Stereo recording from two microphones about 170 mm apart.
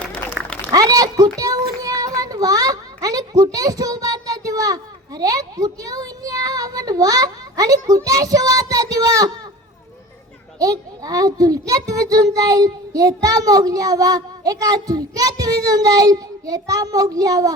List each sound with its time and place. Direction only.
0.0 s applause: 5° left (ahead or behind)
0.7 s a child's voice: 20° right (ahead or behind)
10.6 s a child's voice: 20° right (ahead or behind)